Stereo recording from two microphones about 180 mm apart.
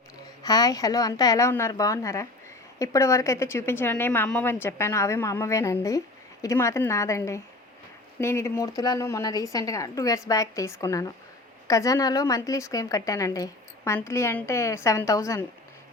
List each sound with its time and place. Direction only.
0.4 s a woman's voice: 20° left (ahead or behind)